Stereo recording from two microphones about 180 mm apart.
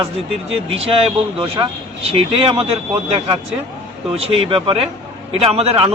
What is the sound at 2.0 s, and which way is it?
Speech, 35° right (ahead or behind).